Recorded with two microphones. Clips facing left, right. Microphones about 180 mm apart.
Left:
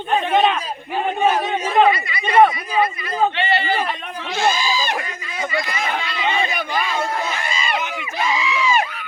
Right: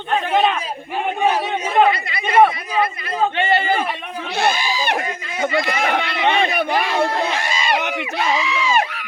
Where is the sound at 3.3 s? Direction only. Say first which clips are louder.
Right 2 dB; 50° right (ahead or behind).